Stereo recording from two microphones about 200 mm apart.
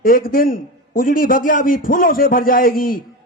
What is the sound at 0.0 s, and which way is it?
A man's voice, 45° left (ahead or behind).